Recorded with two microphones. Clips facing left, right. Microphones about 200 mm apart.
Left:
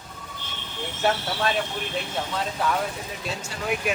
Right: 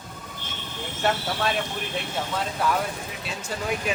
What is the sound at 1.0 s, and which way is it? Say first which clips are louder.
Speech: left 1 dB; centre (ahead or behind).